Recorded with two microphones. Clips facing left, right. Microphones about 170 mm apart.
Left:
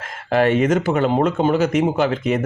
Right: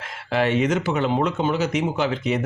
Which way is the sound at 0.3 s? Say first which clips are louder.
Left 4 dB; 50° left (ahead or behind).